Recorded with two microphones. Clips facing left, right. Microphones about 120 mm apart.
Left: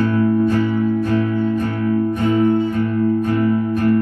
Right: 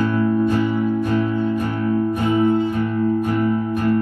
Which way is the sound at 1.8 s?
30° right (ahead or behind).